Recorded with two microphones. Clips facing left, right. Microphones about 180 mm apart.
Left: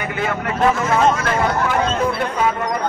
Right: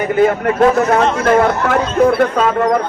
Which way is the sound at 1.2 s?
55° right (ahead or behind).